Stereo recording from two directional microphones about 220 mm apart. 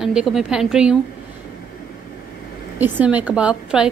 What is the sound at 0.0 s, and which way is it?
Speech, centre (ahead or behind).